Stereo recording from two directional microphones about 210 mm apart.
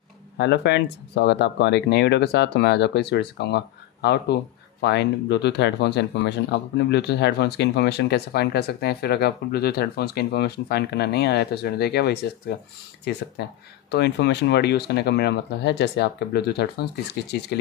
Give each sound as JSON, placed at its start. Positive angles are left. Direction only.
{"t": 0.4, "sound": "speech", "side_deg": 55}